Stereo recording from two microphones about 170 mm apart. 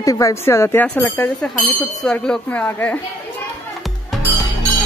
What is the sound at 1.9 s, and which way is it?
Speech, centre (ahead or behind).